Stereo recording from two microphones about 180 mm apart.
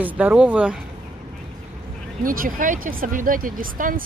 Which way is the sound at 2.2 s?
50° right (ahead or behind).